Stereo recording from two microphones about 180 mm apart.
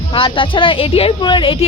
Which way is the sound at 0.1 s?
30° left (ahead or behind).